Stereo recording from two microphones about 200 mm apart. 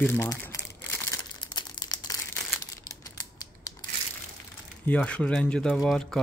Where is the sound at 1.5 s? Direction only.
20° left (ahead or behind).